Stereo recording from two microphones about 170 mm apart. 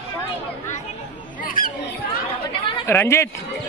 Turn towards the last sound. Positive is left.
turn(degrees=15)  # may be behind; listen again after turning